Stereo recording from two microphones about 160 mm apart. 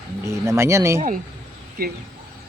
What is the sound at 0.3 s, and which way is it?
Speech, 15° right (ahead or behind).